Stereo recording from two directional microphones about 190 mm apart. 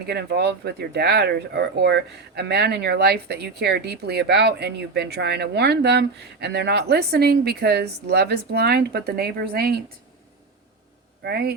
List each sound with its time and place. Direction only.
0.0 s speech: 55° right (ahead or behind)
11.2 s speech: 55° right (ahead or behind)